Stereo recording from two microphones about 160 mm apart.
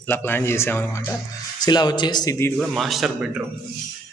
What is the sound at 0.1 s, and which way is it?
Speech, 15° left (ahead or behind).